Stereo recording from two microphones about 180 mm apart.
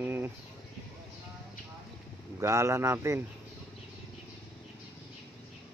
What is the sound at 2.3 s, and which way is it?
Speech, 15° right (ahead or behind).